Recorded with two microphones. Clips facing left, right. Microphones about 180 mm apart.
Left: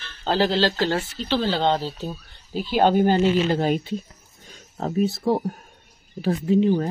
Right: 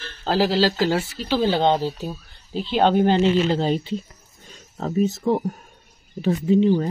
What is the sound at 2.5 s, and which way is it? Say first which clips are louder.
Speech: even; 10° left (ahead or behind).